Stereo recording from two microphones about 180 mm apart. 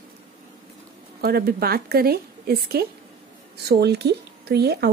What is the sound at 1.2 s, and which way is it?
Speech, 60° right (ahead or behind).